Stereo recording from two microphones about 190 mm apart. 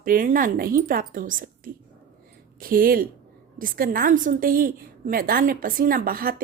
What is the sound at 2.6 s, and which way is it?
A woman's voice, 50° right (ahead or behind).